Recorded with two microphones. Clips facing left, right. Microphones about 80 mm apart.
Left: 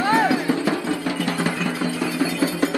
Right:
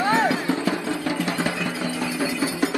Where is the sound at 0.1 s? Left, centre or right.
Left.